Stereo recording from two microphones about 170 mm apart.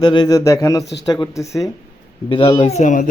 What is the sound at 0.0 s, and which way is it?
Speech, 25° left (ahead or behind).